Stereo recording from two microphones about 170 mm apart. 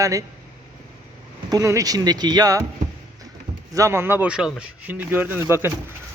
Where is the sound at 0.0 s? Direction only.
20° right (ahead or behind).